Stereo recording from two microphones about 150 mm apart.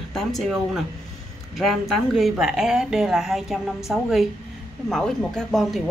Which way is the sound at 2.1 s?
Centre (ahead or behind).